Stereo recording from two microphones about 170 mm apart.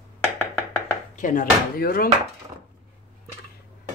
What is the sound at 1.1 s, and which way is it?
Speech, 50° left (ahead or behind).